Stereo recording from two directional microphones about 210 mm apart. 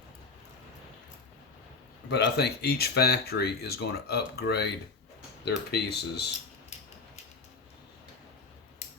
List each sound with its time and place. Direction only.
2.0 s speech: 55° left (ahead or behind)